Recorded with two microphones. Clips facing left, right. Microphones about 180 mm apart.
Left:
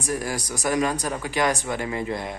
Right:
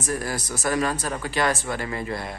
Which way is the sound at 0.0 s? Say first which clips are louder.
Even; 10° left (ahead or behind).